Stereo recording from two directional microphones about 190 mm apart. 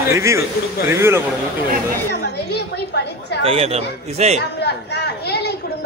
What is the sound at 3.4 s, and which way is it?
Speech, 30° right (ahead or behind).